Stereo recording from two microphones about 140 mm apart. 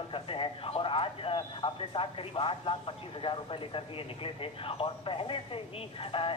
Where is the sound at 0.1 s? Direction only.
40° left (ahead or behind).